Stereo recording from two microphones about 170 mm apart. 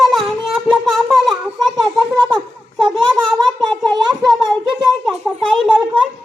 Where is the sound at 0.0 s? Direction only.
Centre (ahead or behind).